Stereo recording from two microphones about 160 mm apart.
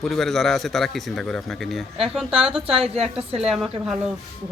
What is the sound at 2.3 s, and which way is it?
Speech, 35° right (ahead or behind).